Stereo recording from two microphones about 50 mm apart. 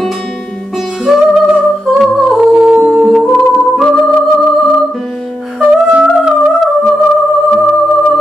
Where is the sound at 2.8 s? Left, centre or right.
Centre.